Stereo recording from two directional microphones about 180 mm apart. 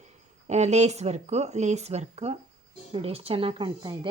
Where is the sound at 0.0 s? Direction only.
40° right (ahead or behind).